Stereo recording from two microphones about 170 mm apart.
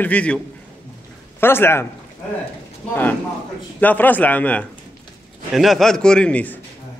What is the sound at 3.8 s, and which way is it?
A man's voice, 10° left (ahead or behind).